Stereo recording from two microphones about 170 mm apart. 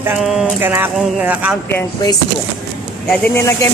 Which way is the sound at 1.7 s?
15° left (ahead or behind).